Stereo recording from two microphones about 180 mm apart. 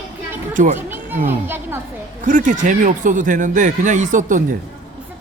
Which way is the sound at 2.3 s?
45° right (ahead or behind).